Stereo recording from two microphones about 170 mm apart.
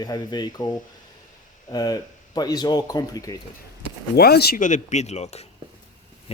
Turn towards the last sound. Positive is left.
turn(degrees=40)  # may be behind; listen again after turning